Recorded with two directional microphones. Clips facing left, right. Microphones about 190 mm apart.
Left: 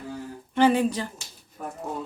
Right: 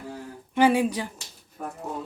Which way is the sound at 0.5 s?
10° right (ahead or behind).